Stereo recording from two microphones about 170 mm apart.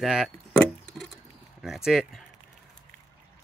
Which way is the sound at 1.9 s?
5° right (ahead or behind).